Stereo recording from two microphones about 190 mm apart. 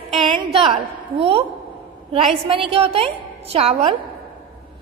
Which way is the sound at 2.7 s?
30° right (ahead or behind).